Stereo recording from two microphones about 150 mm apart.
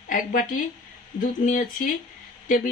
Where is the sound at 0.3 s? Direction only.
65° left (ahead or behind).